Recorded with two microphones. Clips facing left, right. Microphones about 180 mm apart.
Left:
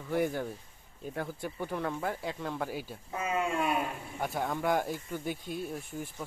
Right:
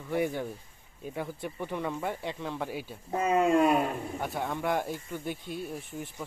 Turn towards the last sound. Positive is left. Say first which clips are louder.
# even
turn(degrees=0)  # may be behind; listen again after turning